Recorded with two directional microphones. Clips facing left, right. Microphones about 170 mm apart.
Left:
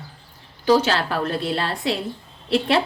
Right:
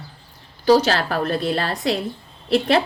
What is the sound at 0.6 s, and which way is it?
A woman's voice, 40° right (ahead or behind).